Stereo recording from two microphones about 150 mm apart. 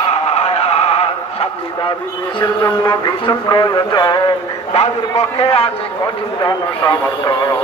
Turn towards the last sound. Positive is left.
turn(degrees=25)  # may be behind; listen again after turning